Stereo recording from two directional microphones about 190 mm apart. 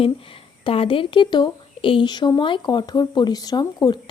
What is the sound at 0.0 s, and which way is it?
A woman's voice, 30° left (ahead or behind).